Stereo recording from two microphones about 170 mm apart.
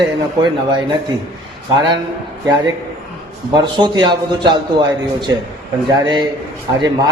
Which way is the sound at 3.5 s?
25° right (ahead or behind).